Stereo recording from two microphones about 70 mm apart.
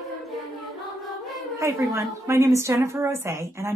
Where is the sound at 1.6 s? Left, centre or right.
Right.